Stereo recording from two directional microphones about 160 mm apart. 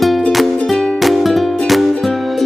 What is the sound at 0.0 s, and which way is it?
Music, 5° left (ahead or behind).